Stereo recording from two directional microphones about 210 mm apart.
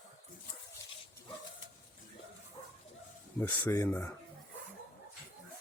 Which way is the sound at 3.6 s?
10° left (ahead or behind).